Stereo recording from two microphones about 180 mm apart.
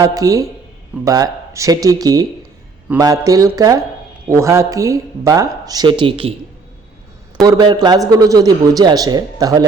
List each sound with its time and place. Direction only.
0.0 s a man's voice: 20° right (ahead or behind)
7.4 s a man's voice: 25° right (ahead or behind)